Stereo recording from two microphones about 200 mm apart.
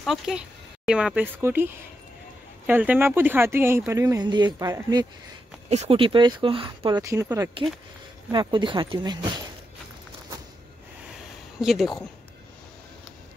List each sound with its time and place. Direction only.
0.0 s speech: centre (ahead or behind); by 5.0 s 20° right (ahead or behind)
5.7 s speech: 30° right (ahead or behind); by 7.5 s 10° right (ahead or behind)
8.3 s speech: 25° right (ahead or behind)
11.6 s speech: centre (ahead or behind)